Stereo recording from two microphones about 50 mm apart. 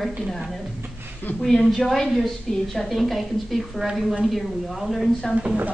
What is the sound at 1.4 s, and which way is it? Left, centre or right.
A woman's voice, centre.